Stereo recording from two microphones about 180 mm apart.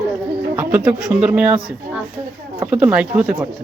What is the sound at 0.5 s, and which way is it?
Speech, 5° right (ahead or behind).